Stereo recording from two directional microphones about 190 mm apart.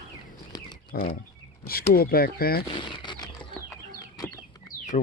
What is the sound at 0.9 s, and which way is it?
Speech, 50° left (ahead or behind).